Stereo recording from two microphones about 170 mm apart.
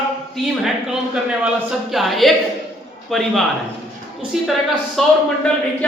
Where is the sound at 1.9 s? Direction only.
Centre (ahead or behind).